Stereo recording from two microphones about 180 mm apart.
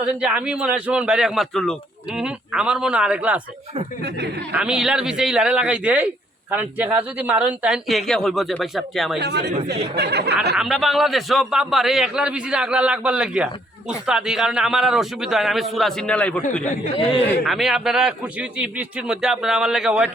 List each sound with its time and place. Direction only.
0.0 s a man's voice: 5° right (ahead or behind)
4.5 s a man's voice: 5° right (ahead or behind)
9.1 s speech: 70° right (ahead or behind)
10.5 s a man's voice: centre (ahead or behind)
17.4 s a man's voice: centre (ahead or behind)